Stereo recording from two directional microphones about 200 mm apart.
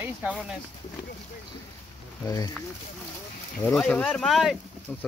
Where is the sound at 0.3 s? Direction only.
Centre (ahead or behind).